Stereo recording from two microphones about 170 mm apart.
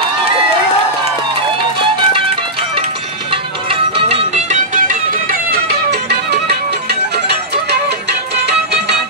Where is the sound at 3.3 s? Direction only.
30° right (ahead or behind); by 8.9 s 75° right (ahead or behind).